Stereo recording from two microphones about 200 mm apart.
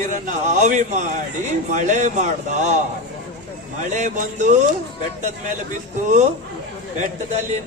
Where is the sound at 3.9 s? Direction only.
35° right (ahead or behind).